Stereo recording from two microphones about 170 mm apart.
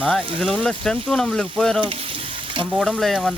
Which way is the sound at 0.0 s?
5° left (ahead or behind).